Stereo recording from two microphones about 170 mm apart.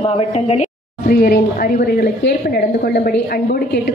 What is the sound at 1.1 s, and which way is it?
A woman's voice, 60° left (ahead or behind).